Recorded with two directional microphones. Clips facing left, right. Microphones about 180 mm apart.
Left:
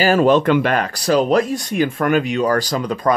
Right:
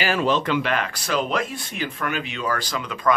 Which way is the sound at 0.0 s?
45° left (ahead or behind).